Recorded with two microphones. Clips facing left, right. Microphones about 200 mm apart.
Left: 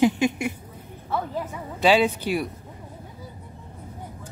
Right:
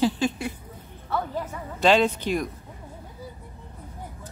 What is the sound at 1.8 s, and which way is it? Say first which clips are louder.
Speech: left 1 dB; 10° left (ahead or behind).